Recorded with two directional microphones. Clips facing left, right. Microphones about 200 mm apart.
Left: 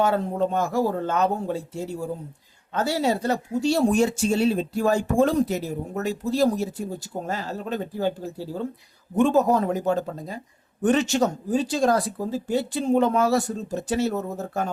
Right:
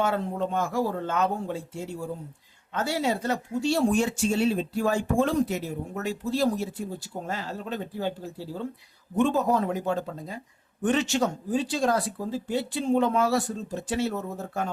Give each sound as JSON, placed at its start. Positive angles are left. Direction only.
{"t": 0.0, "sound": "speech", "side_deg": 40}